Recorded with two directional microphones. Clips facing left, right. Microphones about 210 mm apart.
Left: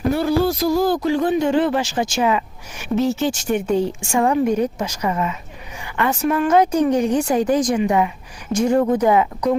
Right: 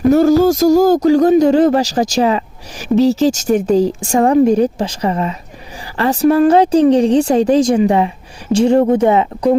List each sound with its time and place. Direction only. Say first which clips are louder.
0.1 s speech: right 9 dB; 45° right (ahead or behind)